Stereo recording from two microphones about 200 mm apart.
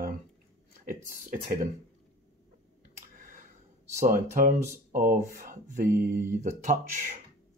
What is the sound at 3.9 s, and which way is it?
Speech, 40° right (ahead or behind).